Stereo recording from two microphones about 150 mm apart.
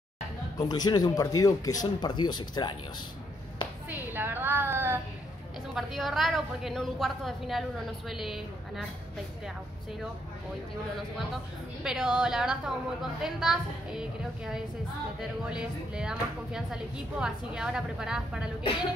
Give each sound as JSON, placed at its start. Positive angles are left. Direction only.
{"t": 0.6, "sound": "speech", "side_deg": 25}
{"t": 3.9, "sound": "a sound", "side_deg": -15}
{"t": 5.8, "sound": "a woman's voice", "side_deg": 0}
{"t": 11.8, "sound": "a woman's voice", "side_deg": -5}